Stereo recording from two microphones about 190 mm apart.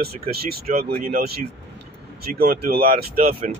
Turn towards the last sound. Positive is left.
turn(degrees=-50)  # may be behind; listen again after turning